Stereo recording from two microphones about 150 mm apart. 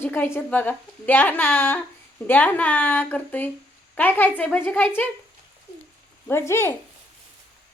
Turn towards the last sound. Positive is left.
turn(degrees=15)  # may be behind; listen again after turning